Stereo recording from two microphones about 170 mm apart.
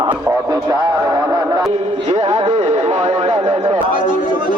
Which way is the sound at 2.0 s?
40° right (ahead or behind).